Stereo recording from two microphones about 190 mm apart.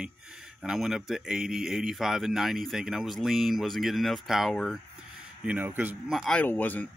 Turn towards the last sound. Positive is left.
turn(degrees=10)  # may be behind; listen again after turning